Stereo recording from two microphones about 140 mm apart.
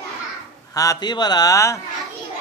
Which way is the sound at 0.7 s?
30° left (ahead or behind).